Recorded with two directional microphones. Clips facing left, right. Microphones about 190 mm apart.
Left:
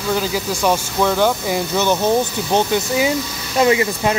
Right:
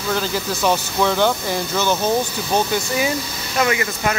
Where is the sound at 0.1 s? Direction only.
5° left (ahead or behind).